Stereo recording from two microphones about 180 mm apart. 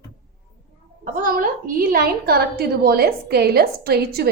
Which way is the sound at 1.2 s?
50° right (ahead or behind).